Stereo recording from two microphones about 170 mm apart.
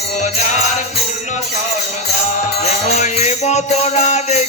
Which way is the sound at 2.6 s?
40° left (ahead or behind).